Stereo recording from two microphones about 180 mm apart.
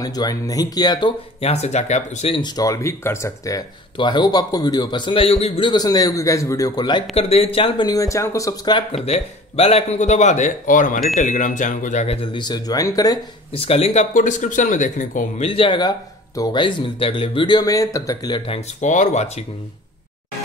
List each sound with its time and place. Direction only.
0.0 s speech: 20° left (ahead or behind)
1.4 s speech: 35° left (ahead or behind); by 8.8 s 20° left (ahead or behind)
8.9 s a man's voice: 35° left (ahead or behind); by 13.2 s 20° left (ahead or behind)
13.5 s speech: 35° left (ahead or behind)
15.4 s speech: 30° left (ahead or behind)
18.5 s a man's voice: 45° left (ahead or behind)